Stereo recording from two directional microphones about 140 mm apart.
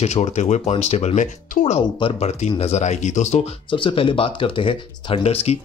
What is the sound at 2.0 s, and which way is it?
Speech, 45° left (ahead or behind).